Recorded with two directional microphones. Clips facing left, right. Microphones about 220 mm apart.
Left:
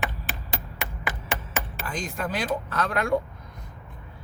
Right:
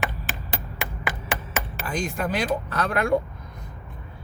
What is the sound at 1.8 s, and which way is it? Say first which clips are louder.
Speech: right 5 dB; 10° right (ahead or behind).